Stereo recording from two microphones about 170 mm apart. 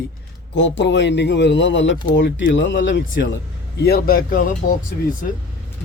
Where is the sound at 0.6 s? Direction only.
90° left.